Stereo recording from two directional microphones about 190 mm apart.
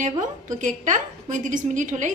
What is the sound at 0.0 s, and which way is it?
A woman's voice, 40° right (ahead or behind).